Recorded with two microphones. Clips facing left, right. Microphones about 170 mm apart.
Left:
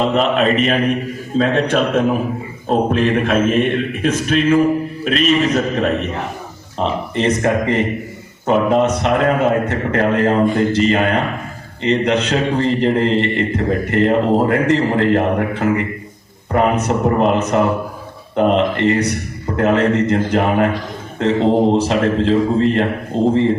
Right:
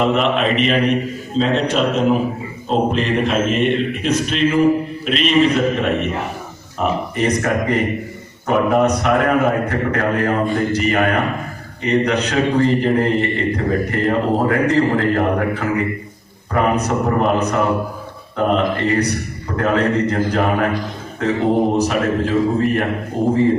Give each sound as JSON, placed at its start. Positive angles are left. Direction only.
{"t": 0.0, "sound": "a man's voice", "side_deg": 35}
{"t": 1.4, "sound": "mantra", "side_deg": 55}
{"t": 5.0, "sound": "a man's voice", "side_deg": 45}